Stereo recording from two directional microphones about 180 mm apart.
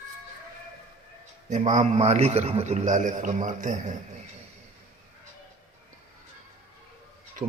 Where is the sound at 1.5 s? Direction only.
45° right (ahead or behind).